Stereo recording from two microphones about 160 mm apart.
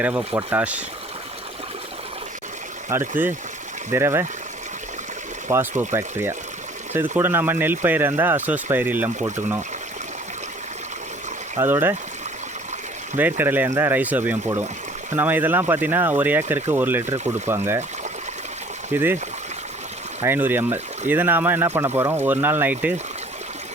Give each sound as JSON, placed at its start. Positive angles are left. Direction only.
{"t": 0.0, "sound": "speech", "side_deg": -10}
{"t": 2.9, "sound": "speech", "side_deg": -15}
{"t": 5.5, "sound": "speech", "side_deg": -15}
{"t": 11.6, "sound": "speech", "side_deg": -15}
{"t": 13.1, "sound": "speech", "side_deg": -10}
{"t": 18.9, "sound": "speech", "side_deg": -15}
{"t": 20.2, "sound": "speech", "side_deg": -15}